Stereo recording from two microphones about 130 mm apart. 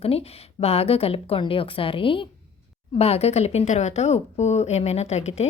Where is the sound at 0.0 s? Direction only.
50° left (ahead or behind).